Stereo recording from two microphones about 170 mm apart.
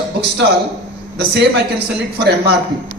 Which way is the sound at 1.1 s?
75° right (ahead or behind).